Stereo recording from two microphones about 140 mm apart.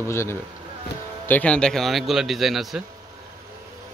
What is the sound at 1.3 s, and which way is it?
A man's voice, 10° left (ahead or behind).